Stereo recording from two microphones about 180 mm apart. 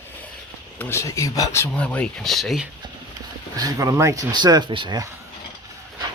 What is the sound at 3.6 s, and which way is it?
Speech, 20° right (ahead or behind).